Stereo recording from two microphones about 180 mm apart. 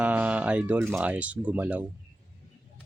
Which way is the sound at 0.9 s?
10° right (ahead or behind).